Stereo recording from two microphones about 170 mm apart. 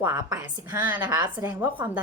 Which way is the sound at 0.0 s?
15° right (ahead or behind).